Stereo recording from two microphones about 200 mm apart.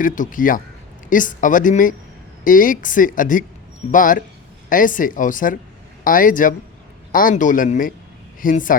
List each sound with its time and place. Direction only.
0.0 s speech: 40° left (ahead or behind)